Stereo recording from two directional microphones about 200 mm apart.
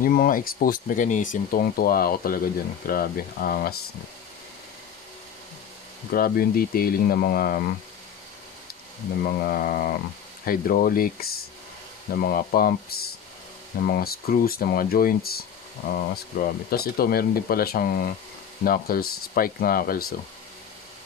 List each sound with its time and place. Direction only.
0.0 s speech: 45° left (ahead or behind)
6.1 s speech: 50° left (ahead or behind)
9.2 s speech: 45° left (ahead or behind)